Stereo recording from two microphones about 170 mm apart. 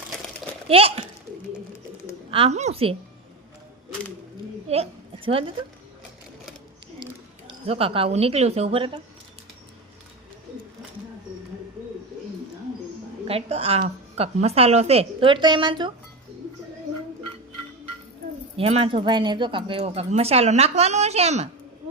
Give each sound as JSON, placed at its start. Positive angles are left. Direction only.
{"t": 0.7, "sound": "speech", "side_deg": -35}
{"t": 2.3, "sound": "speech", "side_deg": -35}
{"t": 4.7, "sound": "a woman's voice", "side_deg": -35}
{"t": 7.6, "sound": "speech", "side_deg": -35}
{"t": 13.2, "sound": "speech", "side_deg": -35}
{"t": 18.5, "sound": "speech", "side_deg": -35}